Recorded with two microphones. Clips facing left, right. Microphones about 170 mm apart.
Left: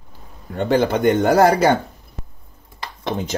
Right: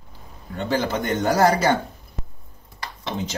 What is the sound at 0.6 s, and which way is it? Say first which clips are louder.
Speech: left 6 dB; 55° left (ahead or behind).